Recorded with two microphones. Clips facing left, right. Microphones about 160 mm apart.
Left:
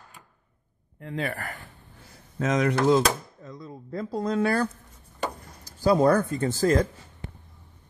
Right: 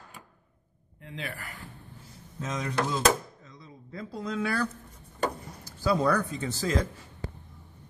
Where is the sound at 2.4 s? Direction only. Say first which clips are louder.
Left 8 dB; 80° left.